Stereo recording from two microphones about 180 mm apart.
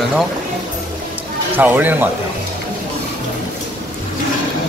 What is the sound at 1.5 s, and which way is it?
Speech, 10° right (ahead or behind).